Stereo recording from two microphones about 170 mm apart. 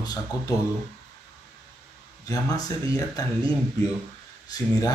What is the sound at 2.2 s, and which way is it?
Speech, 20° left (ahead or behind).